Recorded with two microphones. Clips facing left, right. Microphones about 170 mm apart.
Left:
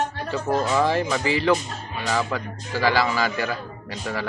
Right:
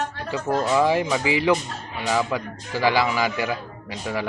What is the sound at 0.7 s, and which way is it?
A man's voice, 10° right (ahead or behind).